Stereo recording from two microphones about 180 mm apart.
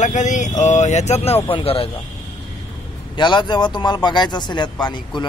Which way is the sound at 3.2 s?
25° left (ahead or behind).